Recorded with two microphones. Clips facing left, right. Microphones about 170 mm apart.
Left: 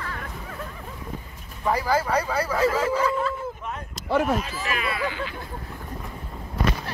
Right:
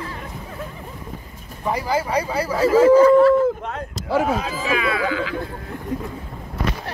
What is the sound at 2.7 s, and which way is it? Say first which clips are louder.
Speech: right 12 dB; 40° right (ahead or behind).